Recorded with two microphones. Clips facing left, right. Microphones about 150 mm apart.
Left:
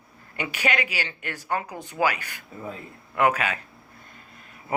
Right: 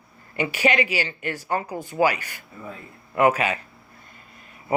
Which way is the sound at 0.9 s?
45° right (ahead or behind).